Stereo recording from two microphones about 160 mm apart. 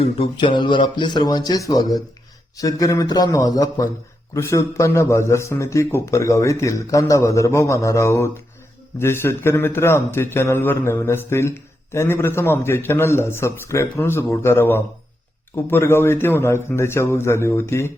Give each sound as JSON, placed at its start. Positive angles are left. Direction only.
{"t": 0.0, "sound": "speech", "side_deg": 35}